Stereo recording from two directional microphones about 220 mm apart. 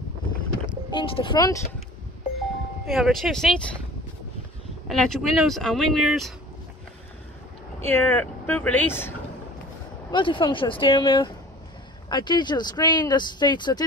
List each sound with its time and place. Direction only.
0.9 s speech: 25° left (ahead or behind)
2.9 s speech: centre (ahead or behind)
4.8 s speech: centre (ahead or behind)
7.8 s speech: 10° left (ahead or behind)
10.1 s speech: 20° left (ahead or behind)